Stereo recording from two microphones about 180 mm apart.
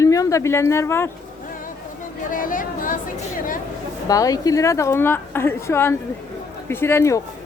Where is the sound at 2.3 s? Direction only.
50° left (ahead or behind).